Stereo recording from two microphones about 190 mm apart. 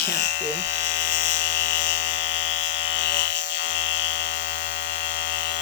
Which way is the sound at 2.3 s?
75° left (ahead or behind).